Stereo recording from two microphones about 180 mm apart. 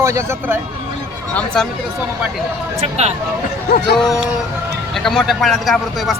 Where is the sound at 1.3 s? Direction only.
5° left (ahead or behind).